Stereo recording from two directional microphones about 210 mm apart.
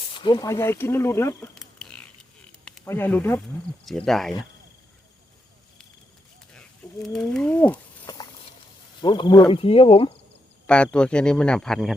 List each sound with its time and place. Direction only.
0.1 s speech: 25° left (ahead or behind)
1.5 s a sound: 5° left (ahead or behind)
2.6 s a man's voice: 10° left (ahead or behind)
6.5 s speech: 5° left (ahead or behind)
8.1 s a sound: 15° left (ahead or behind)
9.0 s speech: 20° left (ahead or behind)
10.9 s a man's voice: 5° left (ahead or behind)